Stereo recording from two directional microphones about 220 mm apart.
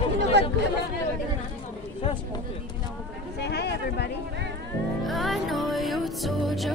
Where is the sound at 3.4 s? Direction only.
50° left (ahead or behind).